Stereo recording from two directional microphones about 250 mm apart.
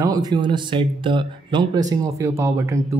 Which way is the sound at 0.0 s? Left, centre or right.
Centre.